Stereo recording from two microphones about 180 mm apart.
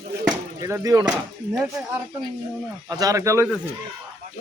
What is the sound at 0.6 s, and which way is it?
Speech, 20° right (ahead or behind).